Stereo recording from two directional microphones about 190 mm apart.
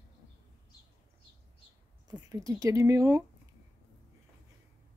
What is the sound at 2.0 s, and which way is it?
Speech, 20° right (ahead or behind).